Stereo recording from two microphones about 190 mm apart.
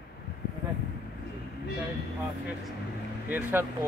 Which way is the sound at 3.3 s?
10° right (ahead or behind).